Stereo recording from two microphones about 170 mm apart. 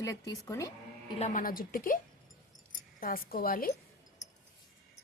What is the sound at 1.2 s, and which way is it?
Speech, 50° left (ahead or behind).